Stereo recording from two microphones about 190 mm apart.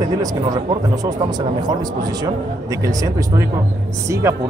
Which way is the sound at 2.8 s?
15° right (ahead or behind).